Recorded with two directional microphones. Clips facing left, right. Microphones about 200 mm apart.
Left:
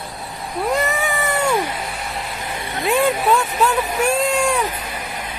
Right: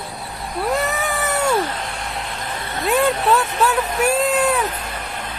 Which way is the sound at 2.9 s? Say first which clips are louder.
Even; centre (ahead or behind).